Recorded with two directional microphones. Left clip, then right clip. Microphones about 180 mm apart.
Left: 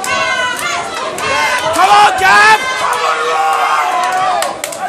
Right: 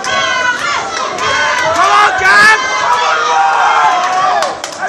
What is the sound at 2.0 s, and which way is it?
Run, 35° left (ahead or behind).